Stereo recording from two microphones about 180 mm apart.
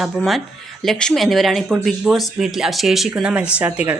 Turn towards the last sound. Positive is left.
turn(degrees=-10)  # may be behind; listen again after turning